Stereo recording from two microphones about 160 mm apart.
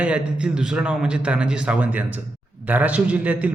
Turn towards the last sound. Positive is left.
turn(degrees=-10)  # may be behind; listen again after turning